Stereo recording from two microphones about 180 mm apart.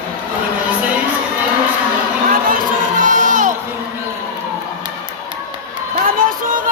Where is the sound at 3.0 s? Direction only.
45° right (ahead or behind).